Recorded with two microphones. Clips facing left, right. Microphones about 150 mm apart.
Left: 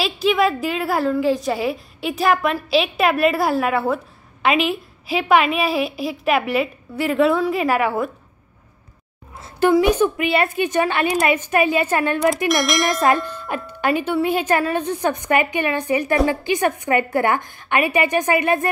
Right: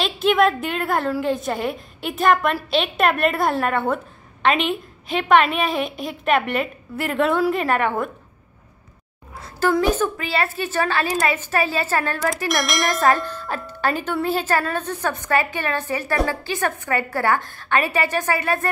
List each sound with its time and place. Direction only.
0.0 s a woman's voice: centre (ahead or behind)
9.7 s a woman's voice: 15° left (ahead or behind)
12.4 s a woman's voice: centre (ahead or behind)
13.1 s a woman's voice: 10° left (ahead or behind)